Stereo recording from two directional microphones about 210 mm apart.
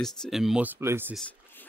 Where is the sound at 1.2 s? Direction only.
5° left (ahead or behind).